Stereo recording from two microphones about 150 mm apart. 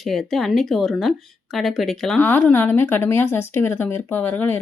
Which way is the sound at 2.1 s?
15° left (ahead or behind).